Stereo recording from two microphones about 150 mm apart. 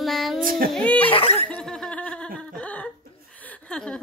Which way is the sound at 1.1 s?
40° left (ahead or behind).